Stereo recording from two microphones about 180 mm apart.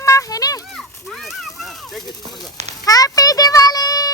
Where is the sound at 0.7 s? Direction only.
Centre (ahead or behind).